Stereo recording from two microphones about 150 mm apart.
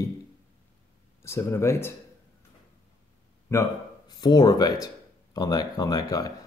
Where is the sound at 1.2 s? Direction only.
15° left (ahead or behind).